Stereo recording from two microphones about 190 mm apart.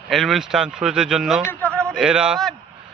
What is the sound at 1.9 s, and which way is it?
Speech, 5° right (ahead or behind).